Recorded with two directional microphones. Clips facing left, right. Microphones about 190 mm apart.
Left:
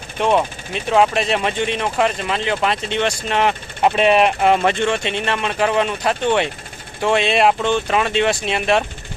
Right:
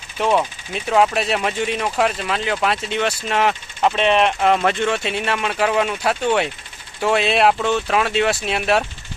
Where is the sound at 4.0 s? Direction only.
10° left (ahead or behind).